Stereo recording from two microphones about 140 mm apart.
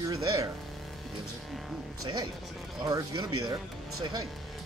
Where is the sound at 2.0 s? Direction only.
25° right (ahead or behind).